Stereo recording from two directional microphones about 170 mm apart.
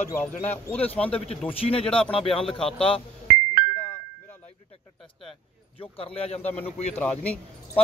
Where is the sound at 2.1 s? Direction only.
5° left (ahead or behind).